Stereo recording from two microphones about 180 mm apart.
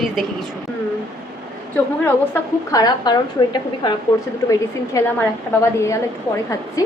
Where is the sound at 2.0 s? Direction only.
15° left (ahead or behind).